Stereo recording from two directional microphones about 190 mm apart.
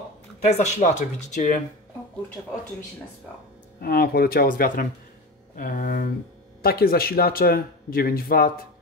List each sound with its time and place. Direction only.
0.5 s speech: 35° left (ahead or behind)
3.8 s speech: 55° left (ahead or behind)